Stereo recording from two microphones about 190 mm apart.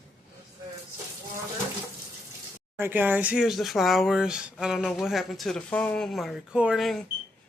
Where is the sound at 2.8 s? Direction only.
10° right (ahead or behind).